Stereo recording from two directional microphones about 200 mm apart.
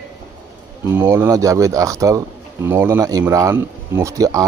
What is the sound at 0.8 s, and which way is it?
Speech, 10° right (ahead or behind).